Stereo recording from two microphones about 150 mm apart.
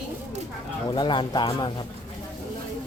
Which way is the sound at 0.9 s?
30° left (ahead or behind).